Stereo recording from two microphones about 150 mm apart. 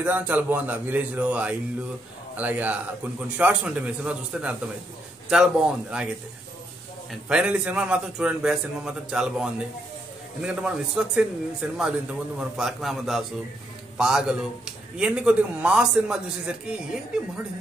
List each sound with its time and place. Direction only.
0.0 s a man's voice: 10° right (ahead or behind)
7.1 s a man's voice: 5° right (ahead or behind)